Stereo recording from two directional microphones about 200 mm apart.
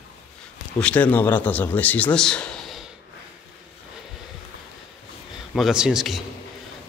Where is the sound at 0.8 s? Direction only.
5° left (ahead or behind).